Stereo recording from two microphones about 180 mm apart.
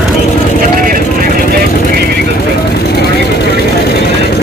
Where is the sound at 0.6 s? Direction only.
50° right (ahead or behind).